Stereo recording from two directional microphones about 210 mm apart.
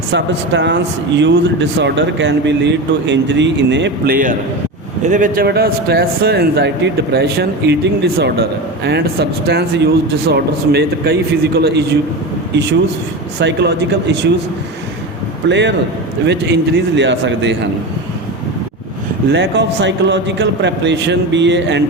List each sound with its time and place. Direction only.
0.1 s speech: 60° right (ahead or behind)
13.4 s speech: 55° right (ahead or behind)
15.4 s speech: 55° right (ahead or behind)
19.3 s speech: 55° right (ahead or behind)